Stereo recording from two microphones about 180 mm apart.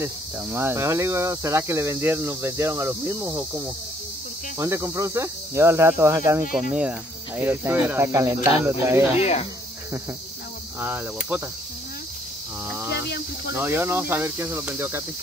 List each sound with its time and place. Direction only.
0.0 s speech: 10° right (ahead or behind)
9.1 s speech: 35° left (ahead or behind)
10.8 s speech: 10° right (ahead or behind)
12.6 s cricket: 15° right (ahead or behind)
13.5 s speech: 10° right (ahead or behind)